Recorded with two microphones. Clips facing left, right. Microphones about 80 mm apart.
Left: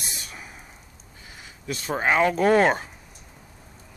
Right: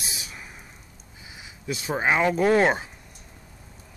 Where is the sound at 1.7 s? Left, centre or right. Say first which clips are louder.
Even; centre.